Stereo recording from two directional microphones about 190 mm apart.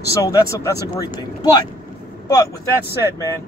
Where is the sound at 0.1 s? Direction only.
20° left (ahead or behind).